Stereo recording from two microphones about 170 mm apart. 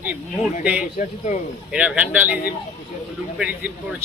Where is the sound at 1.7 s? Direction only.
5° right (ahead or behind).